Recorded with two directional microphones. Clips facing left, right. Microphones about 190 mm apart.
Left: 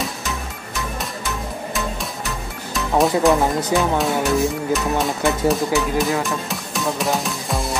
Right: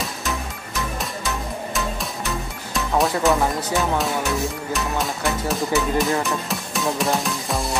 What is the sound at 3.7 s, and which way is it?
Speech, 20° left (ahead or behind).